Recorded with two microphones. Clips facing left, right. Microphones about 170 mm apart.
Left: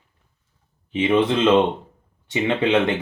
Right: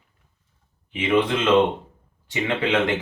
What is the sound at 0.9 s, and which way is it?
Speech, 25° left (ahead or behind).